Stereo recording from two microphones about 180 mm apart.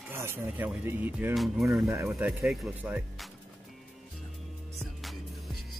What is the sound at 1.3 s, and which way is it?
Speech, centre (ahead or behind).